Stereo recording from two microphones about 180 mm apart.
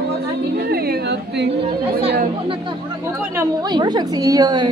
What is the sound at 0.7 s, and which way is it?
Speech, 60° right (ahead or behind).